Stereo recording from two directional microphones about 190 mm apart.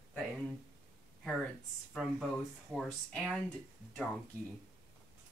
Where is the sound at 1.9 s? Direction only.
Centre (ahead or behind).